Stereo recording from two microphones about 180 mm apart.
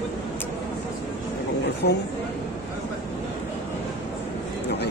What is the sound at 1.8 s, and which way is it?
Speech, 65° left (ahead or behind).